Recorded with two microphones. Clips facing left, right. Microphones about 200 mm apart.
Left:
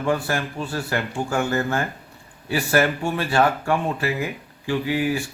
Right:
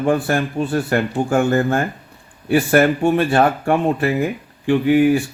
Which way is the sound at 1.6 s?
30° right (ahead or behind).